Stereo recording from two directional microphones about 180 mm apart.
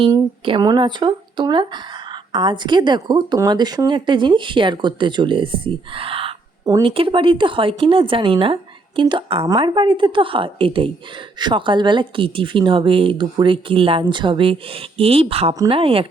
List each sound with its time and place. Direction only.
0.4 s a woman's voice: 25° right (ahead or behind)